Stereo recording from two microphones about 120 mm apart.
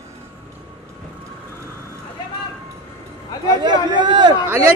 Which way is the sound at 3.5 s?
40° right (ahead or behind).